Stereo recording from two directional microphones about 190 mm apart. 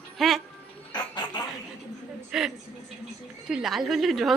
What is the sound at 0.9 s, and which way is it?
Speech, 20° left (ahead or behind).